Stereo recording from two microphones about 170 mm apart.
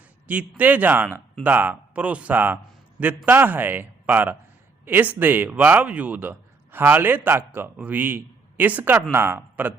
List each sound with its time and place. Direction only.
0.3 s a man's voice: 10° right (ahead or behind)